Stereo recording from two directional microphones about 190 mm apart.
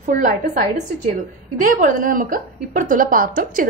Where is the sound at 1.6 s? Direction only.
45° right (ahead or behind).